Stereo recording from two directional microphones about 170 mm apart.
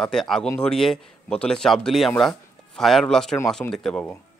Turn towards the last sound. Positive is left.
turn(degrees=5)  # may be behind; listen again after turning